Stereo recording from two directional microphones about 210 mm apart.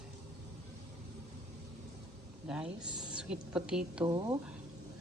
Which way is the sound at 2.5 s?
5° right (ahead or behind).